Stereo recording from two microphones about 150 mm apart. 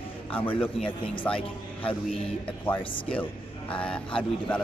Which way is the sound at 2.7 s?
10° left (ahead or behind).